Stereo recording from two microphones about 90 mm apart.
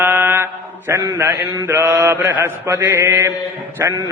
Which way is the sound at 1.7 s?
20° right (ahead or behind).